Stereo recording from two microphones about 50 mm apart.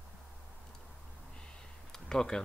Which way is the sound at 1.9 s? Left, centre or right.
Centre.